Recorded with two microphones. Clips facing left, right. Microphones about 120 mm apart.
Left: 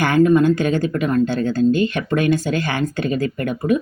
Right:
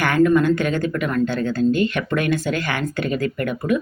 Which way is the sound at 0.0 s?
25° left (ahead or behind).